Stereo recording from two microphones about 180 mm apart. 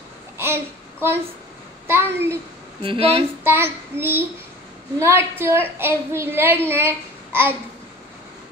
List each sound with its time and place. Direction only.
0.4 s a sound: 15° right (ahead or behind)
1.9 s a woman's voice: 15° right (ahead or behind)
2.8 s speech: 30° right (ahead or behind)
3.4 s a woman's voice: 15° right (ahead or behind)